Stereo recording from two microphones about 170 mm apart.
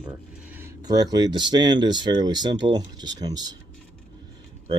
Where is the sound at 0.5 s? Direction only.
20° right (ahead or behind).